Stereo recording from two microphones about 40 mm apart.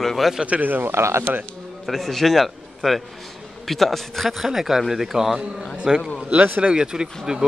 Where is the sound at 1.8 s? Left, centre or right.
Centre.